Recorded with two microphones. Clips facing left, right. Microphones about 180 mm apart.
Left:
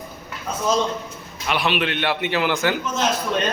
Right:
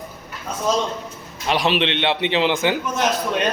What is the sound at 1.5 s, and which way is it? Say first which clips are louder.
A man's voice: right 3 dB; 30° right (ahead or behind).